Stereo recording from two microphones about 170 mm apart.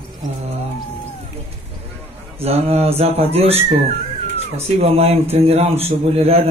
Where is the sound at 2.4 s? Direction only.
35° right (ahead or behind).